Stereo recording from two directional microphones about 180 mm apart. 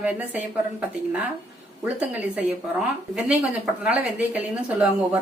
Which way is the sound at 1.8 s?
10° right (ahead or behind).